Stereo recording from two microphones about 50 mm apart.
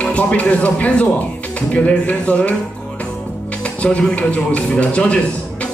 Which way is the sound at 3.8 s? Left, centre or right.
Left.